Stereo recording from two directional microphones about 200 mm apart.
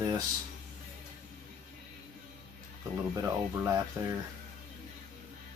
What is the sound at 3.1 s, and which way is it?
Speech, 15° right (ahead or behind).